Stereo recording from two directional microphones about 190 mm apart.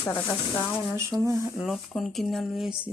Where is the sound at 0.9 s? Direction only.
15° right (ahead or behind).